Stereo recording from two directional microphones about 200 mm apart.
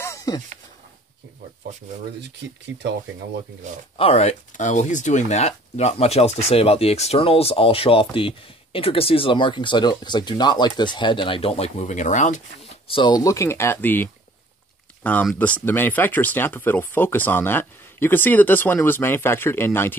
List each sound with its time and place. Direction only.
0.0 s a sound: 15° left (ahead or behind)
2.7 s speech: 65° right (ahead or behind)
3.9 s speech: 30° left (ahead or behind); by 14.0 s 10° left (ahead or behind)
15.0 s speech: 10° left (ahead or behind)